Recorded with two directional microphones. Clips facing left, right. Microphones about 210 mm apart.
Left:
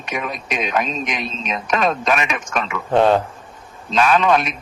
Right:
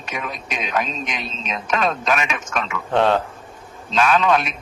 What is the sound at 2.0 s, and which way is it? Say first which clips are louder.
A man's voice: left 2 dB; centre (ahead or behind).